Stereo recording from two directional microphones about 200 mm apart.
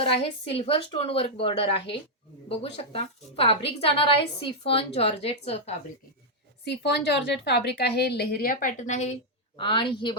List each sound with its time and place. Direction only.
0.0 s a woman's voice: 30° left (ahead or behind)
6.7 s a woman's voice: 55° left (ahead or behind); by 9.1 s 35° left (ahead or behind)
9.6 s a woman's voice: 25° left (ahead or behind)